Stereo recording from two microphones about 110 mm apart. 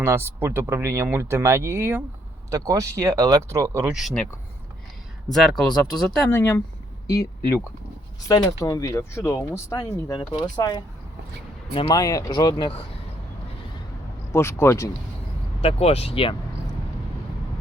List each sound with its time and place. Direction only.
0.0 s speech: 25° right (ahead or behind)
3.8 s speech: 5° right (ahead or behind)
5.3 s speech: centre (ahead or behind)
6.3 s speech: 20° left (ahead or behind)
8.3 s speech: 35° left (ahead or behind)
10.2 s speech: 40° left (ahead or behind)
11.9 s speech: 35° left (ahead or behind)
14.3 s speech: 25° left (ahead or behind)
15.6 s speech: 65° left (ahead or behind)